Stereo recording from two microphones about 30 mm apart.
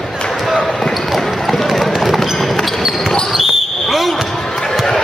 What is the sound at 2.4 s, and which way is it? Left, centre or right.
Basketball bounce, centre.